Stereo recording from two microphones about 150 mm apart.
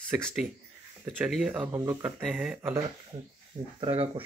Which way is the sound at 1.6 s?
15° right (ahead or behind).